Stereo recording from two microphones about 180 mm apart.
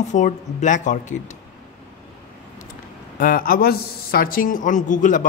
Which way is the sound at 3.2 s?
50° left (ahead or behind).